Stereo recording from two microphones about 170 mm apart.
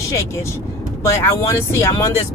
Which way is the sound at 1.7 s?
15° left (ahead or behind).